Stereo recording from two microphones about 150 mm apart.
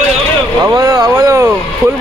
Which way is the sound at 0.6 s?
20° right (ahead or behind).